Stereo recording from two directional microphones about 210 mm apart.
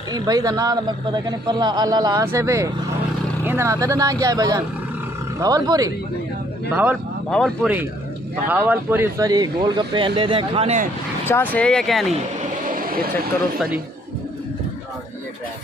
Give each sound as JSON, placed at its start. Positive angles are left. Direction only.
{"t": 0.1, "sound": "a man's voice", "side_deg": -15}
{"t": 6.7, "sound": "a man's voice", "side_deg": -5}
{"t": 8.5, "sound": "speech", "side_deg": -10}
{"t": 11.2, "sound": "speech", "side_deg": 10}
{"t": 12.6, "sound": "vehicle", "side_deg": -40}